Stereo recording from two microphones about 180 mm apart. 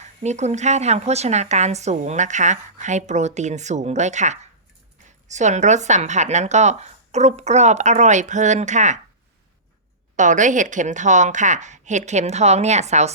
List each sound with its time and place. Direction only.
0.0 s a woman's voice: 40° right (ahead or behind)
10.2 s a woman's voice: 45° right (ahead or behind)